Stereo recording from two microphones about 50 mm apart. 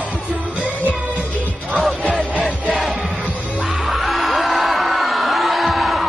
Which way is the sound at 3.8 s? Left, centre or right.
Centre.